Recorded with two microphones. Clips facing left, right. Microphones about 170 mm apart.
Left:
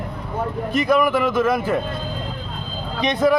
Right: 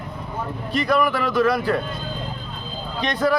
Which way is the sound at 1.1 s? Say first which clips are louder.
Left 1 dB; 20° left (ahead or behind).